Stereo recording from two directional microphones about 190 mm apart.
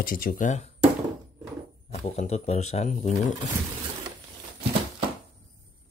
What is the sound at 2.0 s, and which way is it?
Speech, 35° left (ahead or behind).